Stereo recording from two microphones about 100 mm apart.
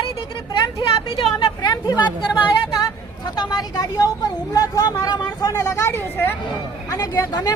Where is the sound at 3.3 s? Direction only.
45° left (ahead or behind).